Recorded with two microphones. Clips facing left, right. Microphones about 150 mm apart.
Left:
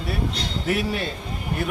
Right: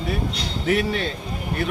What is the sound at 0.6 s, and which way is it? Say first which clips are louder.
Speech: right 3 dB; 5° left (ahead or behind).